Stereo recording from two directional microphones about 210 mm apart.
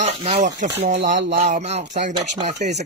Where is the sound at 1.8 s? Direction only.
50° right (ahead or behind).